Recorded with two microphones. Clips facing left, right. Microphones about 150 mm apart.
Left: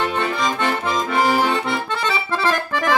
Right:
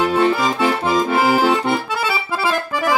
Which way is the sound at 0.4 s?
5° right (ahead or behind).